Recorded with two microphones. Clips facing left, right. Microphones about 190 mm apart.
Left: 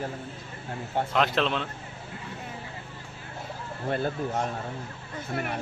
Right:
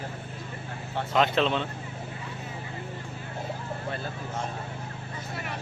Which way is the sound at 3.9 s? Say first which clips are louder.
Left 11 dB; 60° left (ahead or behind).